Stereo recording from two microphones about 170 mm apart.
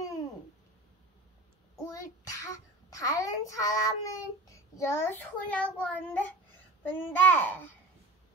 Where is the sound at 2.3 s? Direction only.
20° left (ahead or behind).